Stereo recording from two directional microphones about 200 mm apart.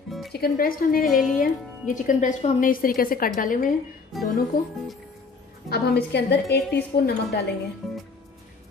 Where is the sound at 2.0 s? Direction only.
40° left (ahead or behind).